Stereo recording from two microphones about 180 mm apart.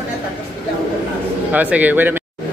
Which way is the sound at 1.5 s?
10° right (ahead or behind).